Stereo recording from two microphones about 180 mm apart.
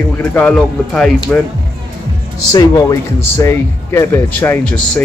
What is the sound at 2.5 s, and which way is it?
Speech, 20° left (ahead or behind).